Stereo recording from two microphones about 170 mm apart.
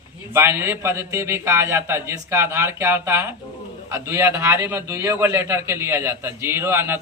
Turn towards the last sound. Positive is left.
turn(degrees=-15)  # may be behind; listen again after turning